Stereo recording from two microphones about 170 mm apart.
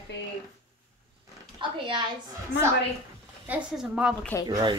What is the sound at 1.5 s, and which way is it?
Speech, 30° right (ahead or behind).